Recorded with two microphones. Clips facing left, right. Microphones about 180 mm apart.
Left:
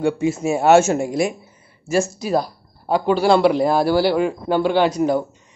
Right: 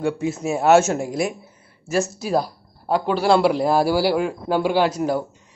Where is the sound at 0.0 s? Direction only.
Centre (ahead or behind).